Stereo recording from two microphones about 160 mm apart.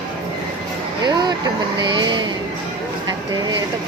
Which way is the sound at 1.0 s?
25° right (ahead or behind).